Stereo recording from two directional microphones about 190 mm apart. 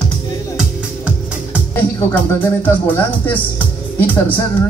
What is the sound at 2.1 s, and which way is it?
A man's voice, 10° left (ahead or behind).